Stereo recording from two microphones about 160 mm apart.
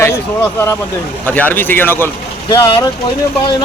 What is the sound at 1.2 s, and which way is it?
A man's voice, 10° left (ahead or behind).